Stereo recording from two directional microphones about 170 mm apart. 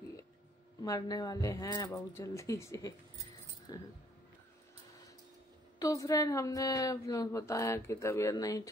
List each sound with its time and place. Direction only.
0.8 s a woman's voice: 20° left (ahead or behind)
5.8 s a woman's voice: 20° left (ahead or behind)